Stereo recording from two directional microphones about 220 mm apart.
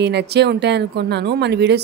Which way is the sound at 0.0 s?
50° right (ahead or behind).